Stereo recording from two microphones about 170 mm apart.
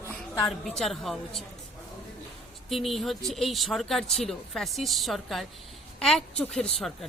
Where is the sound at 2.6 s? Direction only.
Centre (ahead or behind).